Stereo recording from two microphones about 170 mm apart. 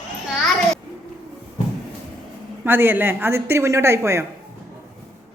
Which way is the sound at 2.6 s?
10° right (ahead or behind).